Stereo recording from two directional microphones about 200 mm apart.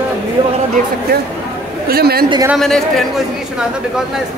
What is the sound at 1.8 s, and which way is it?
Speech, 50° right (ahead or behind).